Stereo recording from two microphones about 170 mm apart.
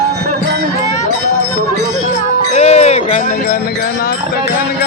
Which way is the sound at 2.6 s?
40° left (ahead or behind).